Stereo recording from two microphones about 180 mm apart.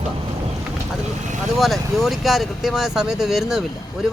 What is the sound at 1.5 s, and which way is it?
Speech, centre (ahead or behind).